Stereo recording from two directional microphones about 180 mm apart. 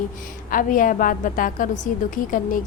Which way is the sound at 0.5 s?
50° left (ahead or behind).